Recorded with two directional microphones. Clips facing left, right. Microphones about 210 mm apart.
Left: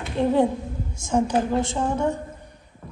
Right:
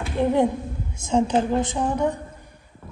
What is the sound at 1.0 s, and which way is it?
A woman's voice, 25° right (ahead or behind).